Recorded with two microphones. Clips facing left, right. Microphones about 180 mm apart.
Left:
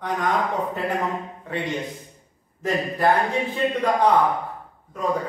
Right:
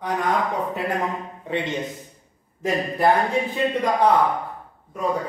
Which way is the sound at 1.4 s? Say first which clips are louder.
Right 3 dB; 20° right (ahead or behind).